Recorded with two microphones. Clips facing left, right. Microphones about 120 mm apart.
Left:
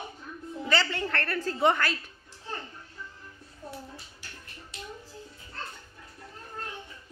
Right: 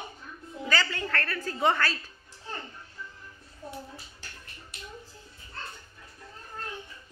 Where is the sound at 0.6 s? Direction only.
20° left (ahead or behind).